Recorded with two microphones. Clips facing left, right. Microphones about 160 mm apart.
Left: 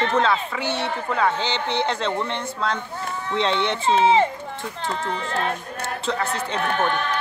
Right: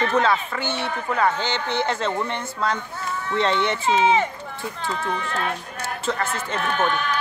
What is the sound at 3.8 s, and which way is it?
Speech, 30° left (ahead or behind).